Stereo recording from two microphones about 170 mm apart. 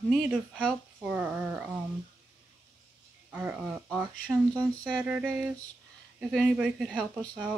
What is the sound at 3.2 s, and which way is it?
Speech, 10° right (ahead or behind).